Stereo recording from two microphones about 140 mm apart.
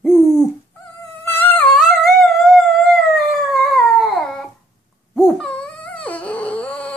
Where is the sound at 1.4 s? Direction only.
10° left (ahead or behind).